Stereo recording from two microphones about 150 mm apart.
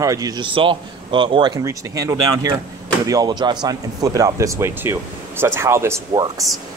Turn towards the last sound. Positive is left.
turn(degrees=-25)  # may be behind; listen again after turning